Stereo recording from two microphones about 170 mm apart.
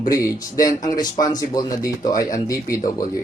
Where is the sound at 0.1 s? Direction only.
20° left (ahead or behind).